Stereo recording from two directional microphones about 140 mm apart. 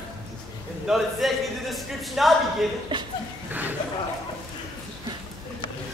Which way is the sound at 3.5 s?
10° right (ahead or behind).